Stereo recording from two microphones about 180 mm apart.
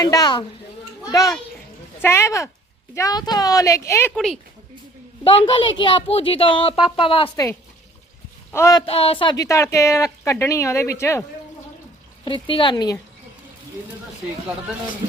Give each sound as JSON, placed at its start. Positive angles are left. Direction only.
{"t": 0.0, "sound": "a woman's voice", "side_deg": 20}
{"t": 4.1, "sound": "speech", "side_deg": 0}
{"t": 5.2, "sound": "speech", "side_deg": 30}
{"t": 8.5, "sound": "a woman's voice", "side_deg": 15}
{"t": 8.9, "sound": "a woman's voice", "side_deg": 35}
{"t": 12.2, "sound": "speech", "side_deg": 30}